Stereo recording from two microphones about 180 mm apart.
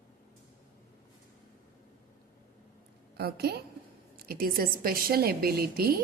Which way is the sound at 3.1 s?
65° right (ahead or behind).